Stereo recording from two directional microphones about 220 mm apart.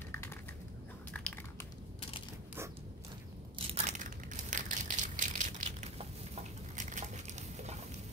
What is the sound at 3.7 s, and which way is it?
Crushing, 30° right (ahead or behind).